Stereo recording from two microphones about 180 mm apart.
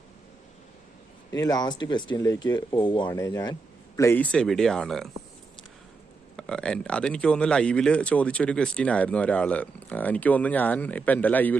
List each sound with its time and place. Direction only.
1.3 s speech: 20° left (ahead or behind); by 5.1 s centre (ahead or behind)
6.3 s speech: 5° left (ahead or behind)